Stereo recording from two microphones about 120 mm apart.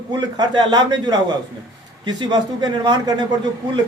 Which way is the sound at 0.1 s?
35° right (ahead or behind).